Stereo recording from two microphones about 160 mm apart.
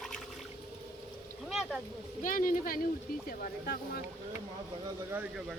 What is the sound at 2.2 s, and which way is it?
Speech, 60° left (ahead or behind).